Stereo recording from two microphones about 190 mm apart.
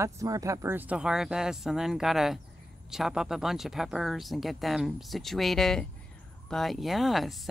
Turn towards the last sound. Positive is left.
turn(degrees=0)  # may be behind; listen again after turning